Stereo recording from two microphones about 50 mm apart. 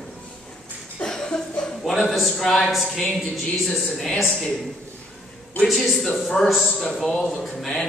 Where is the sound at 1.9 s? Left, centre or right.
Centre.